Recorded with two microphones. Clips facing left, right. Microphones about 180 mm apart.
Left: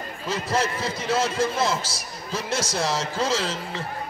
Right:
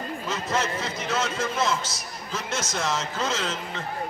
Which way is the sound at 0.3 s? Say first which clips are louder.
Left 3 dB; 35° left (ahead or behind).